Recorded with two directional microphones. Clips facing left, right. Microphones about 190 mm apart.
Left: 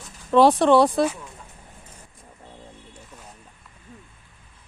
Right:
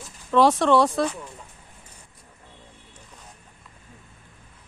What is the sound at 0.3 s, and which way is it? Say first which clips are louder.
Speech: left 3 dB; 30° left (ahead or behind).